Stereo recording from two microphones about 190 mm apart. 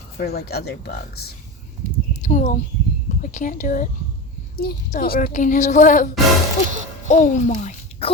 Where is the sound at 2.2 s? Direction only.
40° left (ahead or behind).